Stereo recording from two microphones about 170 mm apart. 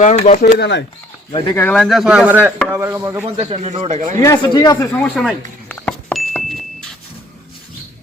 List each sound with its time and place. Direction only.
0.0 s speech: 40° left (ahead or behind)
0.4 s speech: 80° left
1.5 s a man's voice: 5° left (ahead or behind); by 2.5 s 10° right (ahead or behind)
2.7 s chopping: 15° right (ahead or behind)
3.2 s speech: 35° right (ahead or behind)
4.2 s speech: 20° left (ahead or behind)
5.6 s chink: 10° left (ahead or behind)